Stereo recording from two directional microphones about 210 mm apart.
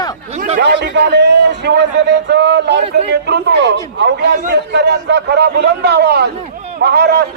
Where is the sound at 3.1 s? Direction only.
55° right (ahead or behind).